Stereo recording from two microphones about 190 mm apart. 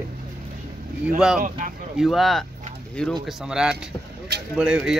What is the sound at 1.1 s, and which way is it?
Speech, 5° right (ahead or behind).